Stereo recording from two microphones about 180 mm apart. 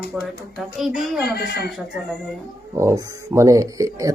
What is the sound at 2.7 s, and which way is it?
Speech, 15° right (ahead or behind).